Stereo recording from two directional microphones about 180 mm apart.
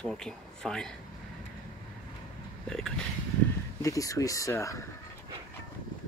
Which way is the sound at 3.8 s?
20° left (ahead or behind).